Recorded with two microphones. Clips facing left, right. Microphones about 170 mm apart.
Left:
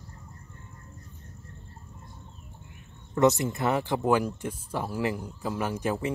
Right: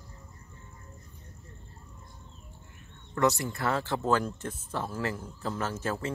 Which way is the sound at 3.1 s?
20° left (ahead or behind).